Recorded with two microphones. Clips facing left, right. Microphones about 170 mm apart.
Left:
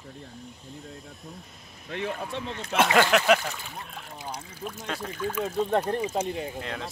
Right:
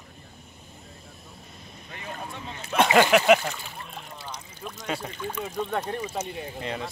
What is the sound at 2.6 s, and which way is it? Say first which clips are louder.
Speech: right 2 dB; 5° right (ahead or behind).